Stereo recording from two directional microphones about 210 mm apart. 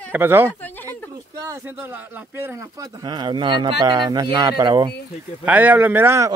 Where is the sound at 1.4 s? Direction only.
15° right (ahead or behind).